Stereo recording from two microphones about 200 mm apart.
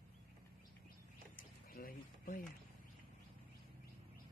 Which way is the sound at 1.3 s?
45° left (ahead or behind).